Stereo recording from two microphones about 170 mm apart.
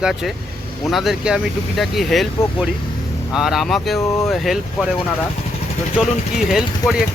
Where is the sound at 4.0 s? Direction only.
20° left (ahead or behind).